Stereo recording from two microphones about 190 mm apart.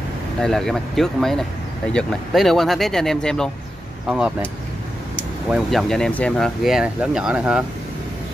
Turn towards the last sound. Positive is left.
turn(degrees=-5)  # may be behind; listen again after turning